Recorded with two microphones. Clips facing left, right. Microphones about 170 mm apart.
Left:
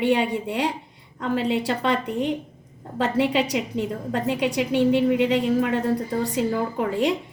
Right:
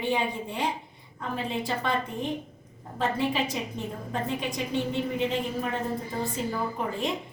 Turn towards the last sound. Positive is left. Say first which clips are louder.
# left 7 dB
turn(degrees=80)